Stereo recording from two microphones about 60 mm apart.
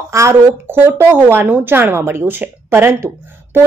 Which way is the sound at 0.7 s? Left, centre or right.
Right.